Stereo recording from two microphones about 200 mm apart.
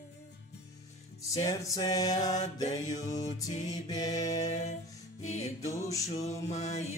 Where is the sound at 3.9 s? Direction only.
20° left (ahead or behind).